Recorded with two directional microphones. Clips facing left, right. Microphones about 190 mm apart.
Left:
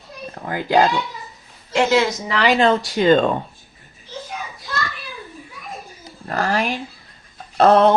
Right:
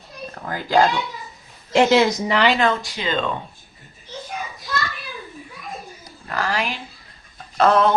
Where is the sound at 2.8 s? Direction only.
45° left (ahead or behind).